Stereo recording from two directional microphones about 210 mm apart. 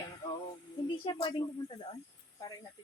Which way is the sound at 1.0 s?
20° left (ahead or behind).